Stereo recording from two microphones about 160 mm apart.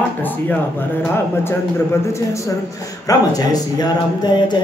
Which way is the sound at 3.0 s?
25° left (ahead or behind).